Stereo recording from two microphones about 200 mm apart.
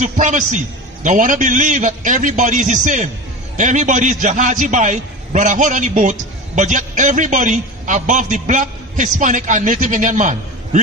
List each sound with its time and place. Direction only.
0.0 s a man's voice: 40° right (ahead or behind)